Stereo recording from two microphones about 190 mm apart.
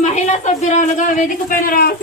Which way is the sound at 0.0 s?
40° left (ahead or behind).